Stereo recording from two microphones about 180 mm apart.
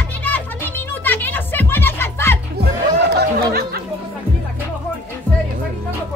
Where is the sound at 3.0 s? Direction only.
65° right (ahead or behind).